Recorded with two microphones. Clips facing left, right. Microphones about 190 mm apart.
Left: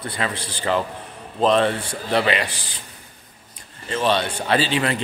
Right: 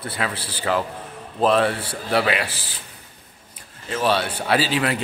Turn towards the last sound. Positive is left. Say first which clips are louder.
# even
turn(degrees=-5)  # may be behind; listen again after turning